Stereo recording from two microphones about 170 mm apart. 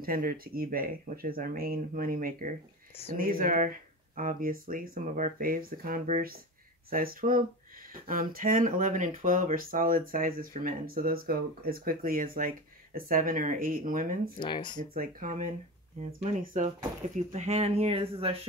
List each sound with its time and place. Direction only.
0.0 s speech: 60° right (ahead or behind)
14.4 s speech: 25° left (ahead or behind)
15.0 s speech: 55° right (ahead or behind); by 18.3 s 35° right (ahead or behind)